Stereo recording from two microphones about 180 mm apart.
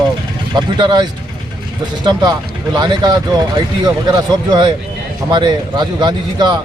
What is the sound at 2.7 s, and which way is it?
Speech, 25° right (ahead or behind).